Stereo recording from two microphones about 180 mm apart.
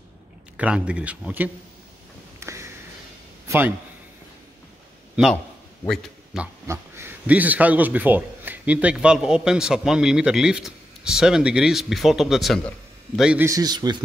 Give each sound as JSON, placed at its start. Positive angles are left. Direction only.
{"t": 0.6, "sound": "a man's voice", "side_deg": -5}
{"t": 2.4, "sound": "a sound", "side_deg": -15}
{"t": 3.4, "sound": "a man's voice", "side_deg": -10}
{"t": 5.9, "sound": "a man's voice", "side_deg": -5}
{"t": 13.5, "sound": "a man's voice", "side_deg": -20}